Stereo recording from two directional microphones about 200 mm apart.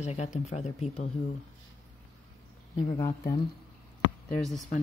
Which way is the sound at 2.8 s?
15° left (ahead or behind).